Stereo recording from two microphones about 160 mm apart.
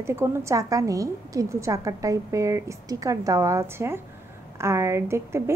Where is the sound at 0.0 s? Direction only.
15° right (ahead or behind).